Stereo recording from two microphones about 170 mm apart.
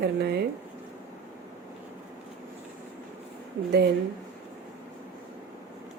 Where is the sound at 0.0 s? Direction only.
75° right (ahead or behind).